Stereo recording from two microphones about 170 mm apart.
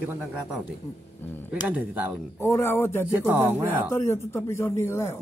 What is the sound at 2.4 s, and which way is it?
Speech, 15° left (ahead or behind).